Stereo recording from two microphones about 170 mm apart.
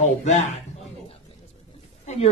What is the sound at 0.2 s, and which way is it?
Speech, 45° left (ahead or behind).